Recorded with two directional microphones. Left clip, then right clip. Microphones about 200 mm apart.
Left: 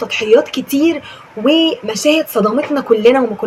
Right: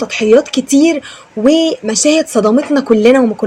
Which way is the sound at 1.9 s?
45° right (ahead or behind).